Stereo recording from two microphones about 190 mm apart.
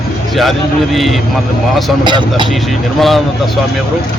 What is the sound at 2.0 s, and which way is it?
Speech, 25° right (ahead or behind).